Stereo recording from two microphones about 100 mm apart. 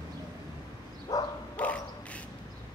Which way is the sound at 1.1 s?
40° left (ahead or behind).